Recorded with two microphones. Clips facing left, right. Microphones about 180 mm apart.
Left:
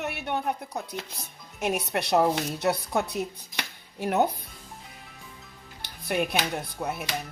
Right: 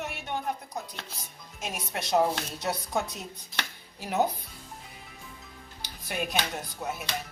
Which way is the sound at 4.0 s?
60° left (ahead or behind).